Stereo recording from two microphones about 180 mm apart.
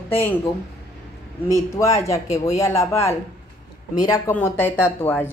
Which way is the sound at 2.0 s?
20° left (ahead or behind).